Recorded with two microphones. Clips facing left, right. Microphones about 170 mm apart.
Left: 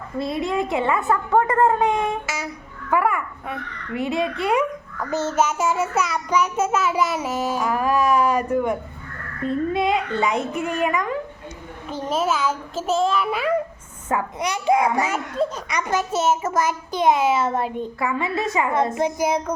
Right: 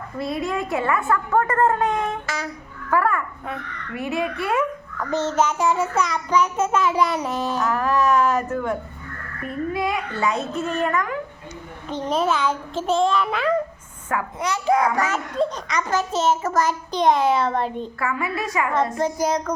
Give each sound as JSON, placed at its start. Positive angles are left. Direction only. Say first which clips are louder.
{"t": 0.2, "sound": "child singing", "louder": "left 2 dB", "side_deg": 20}
{"t": 3.9, "sound": "a child's voice", "louder": "left 2 dB", "side_deg": 20}
{"t": 4.9, "sound": "child singing", "louder": "even", "side_deg": 10}
{"t": 9.4, "sound": "a child's voice", "louder": "left 3 dB", "side_deg": 25}
{"t": 11.9, "sound": "a child's voice", "louder": "right 1 dB", "side_deg": 5}
{"t": 14.1, "sound": "child singing", "louder": "left 1 dB", "side_deg": 15}
{"t": 18.0, "sound": "a child's voice", "louder": "left 2 dB", "side_deg": 25}
{"t": 19.0, "sound": "child singing", "louder": "even", "side_deg": 10}